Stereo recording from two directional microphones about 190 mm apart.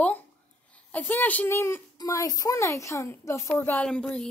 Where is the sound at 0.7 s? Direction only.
5° left (ahead or behind).